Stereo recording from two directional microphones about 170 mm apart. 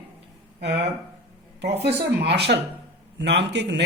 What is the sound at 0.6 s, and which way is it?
Speech, 90° right.